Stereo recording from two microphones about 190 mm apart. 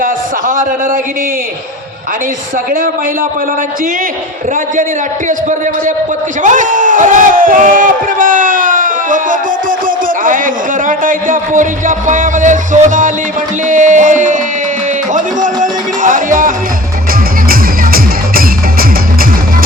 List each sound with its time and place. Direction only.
0.0 s a sound: 45° right (ahead or behind)
6.4 s speech: 40° right (ahead or behind)
17.5 s music: 50° right (ahead or behind)